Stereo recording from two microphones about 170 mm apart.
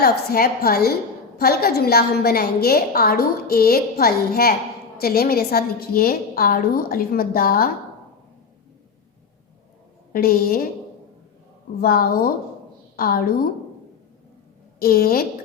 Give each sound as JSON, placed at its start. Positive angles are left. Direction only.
{"t": 0.0, "sound": "a woman's voice", "side_deg": 65}
{"t": 10.1, "sound": "a woman's voice", "side_deg": 60}
{"t": 11.8, "sound": "a woman's voice", "side_deg": 60}
{"t": 14.8, "sound": "a woman's voice", "side_deg": 65}